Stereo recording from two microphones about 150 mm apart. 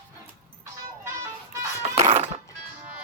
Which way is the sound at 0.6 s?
20° right (ahead or behind).